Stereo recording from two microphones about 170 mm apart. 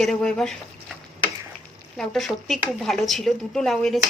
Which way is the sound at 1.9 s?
Centre (ahead or behind).